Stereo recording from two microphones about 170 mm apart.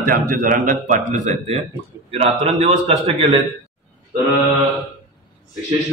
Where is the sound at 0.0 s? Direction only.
55° right (ahead or behind); by 3.4 s 35° right (ahead or behind).